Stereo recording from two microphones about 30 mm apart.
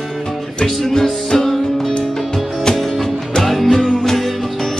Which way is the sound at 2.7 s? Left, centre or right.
Centre.